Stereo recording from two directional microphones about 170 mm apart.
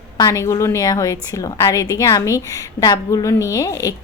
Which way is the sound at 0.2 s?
20° left (ahead or behind).